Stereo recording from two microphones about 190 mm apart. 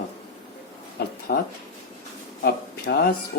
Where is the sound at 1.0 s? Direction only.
55° left (ahead or behind).